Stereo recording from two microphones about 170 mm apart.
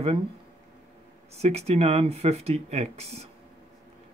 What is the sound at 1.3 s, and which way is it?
A man's voice, 40° right (ahead or behind).